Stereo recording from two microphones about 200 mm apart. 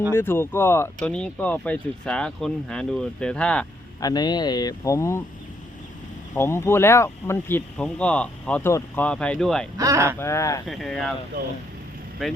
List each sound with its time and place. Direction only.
0.1 s speech: 10° left (ahead or behind)
4.0 s speech: 20° left (ahead or behind)
6.3 s speech: 15° left (ahead or behind)
9.7 s speech: 15° right (ahead or behind)
10.2 s speech: 15° left (ahead or behind)
10.7 s speech: centre (ahead or behind)